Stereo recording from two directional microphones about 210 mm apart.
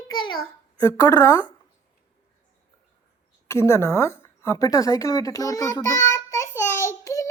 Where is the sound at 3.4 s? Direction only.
15° left (ahead or behind).